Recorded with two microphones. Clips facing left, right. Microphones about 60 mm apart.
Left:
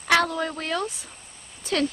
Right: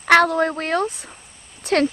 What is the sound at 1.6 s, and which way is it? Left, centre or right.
Speech, right.